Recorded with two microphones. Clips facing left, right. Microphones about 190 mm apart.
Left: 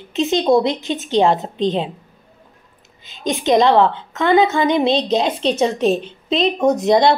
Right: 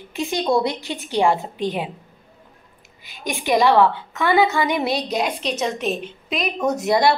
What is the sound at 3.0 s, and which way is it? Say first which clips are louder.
A woman's voice: left 6 dB; 20° left (ahead or behind).